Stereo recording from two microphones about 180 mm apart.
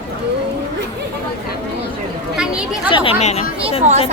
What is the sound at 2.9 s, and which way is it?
Speech, 30° left (ahead or behind).